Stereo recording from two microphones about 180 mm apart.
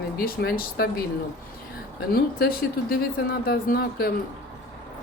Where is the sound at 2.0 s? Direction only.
60° left (ahead or behind).